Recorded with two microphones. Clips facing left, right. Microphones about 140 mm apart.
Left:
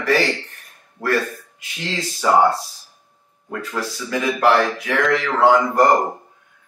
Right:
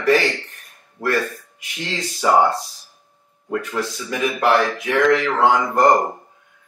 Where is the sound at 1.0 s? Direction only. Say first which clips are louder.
Even; 5° right (ahead or behind).